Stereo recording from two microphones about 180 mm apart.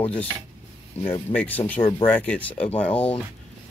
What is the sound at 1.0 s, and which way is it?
Speech, 10° left (ahead or behind).